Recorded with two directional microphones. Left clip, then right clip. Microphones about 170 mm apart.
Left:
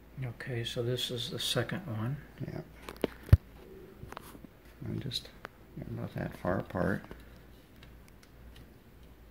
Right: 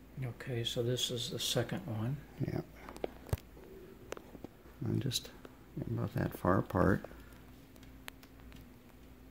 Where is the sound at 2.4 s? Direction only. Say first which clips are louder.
Right 4 dB; 55° right (ahead or behind).